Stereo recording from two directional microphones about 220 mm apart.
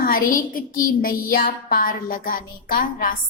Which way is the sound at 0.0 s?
40° left (ahead or behind).